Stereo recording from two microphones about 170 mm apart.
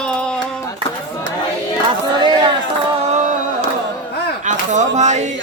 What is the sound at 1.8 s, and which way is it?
Speech, 25° right (ahead or behind).